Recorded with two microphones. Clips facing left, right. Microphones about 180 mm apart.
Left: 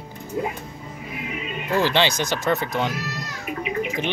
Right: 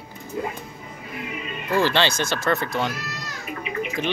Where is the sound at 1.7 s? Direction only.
15° left (ahead or behind).